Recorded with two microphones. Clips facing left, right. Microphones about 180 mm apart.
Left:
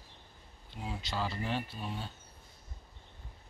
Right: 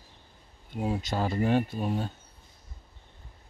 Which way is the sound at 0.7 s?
45° right (ahead or behind).